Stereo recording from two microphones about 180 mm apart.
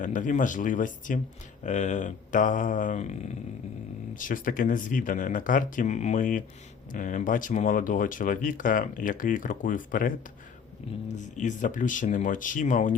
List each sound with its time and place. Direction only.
0.0 s speech: 45° left (ahead or behind)
11.1 s speech: 45° left (ahead or behind)